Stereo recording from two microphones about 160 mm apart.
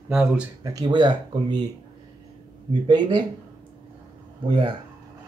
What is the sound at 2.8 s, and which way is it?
Speech, 30° right (ahead or behind).